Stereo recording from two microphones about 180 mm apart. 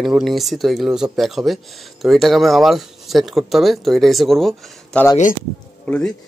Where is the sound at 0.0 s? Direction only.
Centre (ahead or behind).